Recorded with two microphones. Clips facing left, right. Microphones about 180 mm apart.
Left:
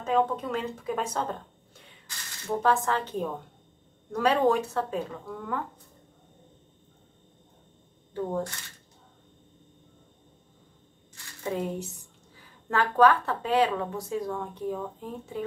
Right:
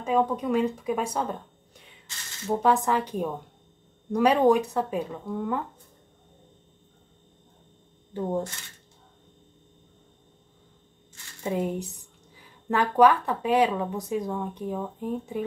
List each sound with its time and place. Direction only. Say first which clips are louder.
0.0 s a woman's voice: right 1 dB; 15° right (ahead or behind)
2.6 s a woman's voice: right 2 dB; 15° right (ahead or behind)
8.1 s speech: right 2 dB; 20° right (ahead or behind)
11.4 s a woman's voice: right 3 dB; 20° right (ahead or behind)